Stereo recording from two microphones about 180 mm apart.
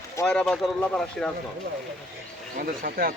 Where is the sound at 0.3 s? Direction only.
5° left (ahead or behind).